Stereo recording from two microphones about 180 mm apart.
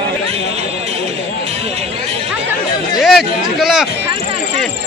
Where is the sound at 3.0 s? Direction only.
Centre (ahead or behind).